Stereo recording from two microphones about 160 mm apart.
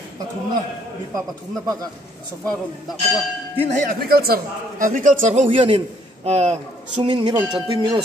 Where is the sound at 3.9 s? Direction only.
70° right (ahead or behind); by 5.4 s 50° right (ahead or behind).